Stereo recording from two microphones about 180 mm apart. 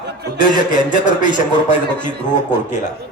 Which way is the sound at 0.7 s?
45° left (ahead or behind).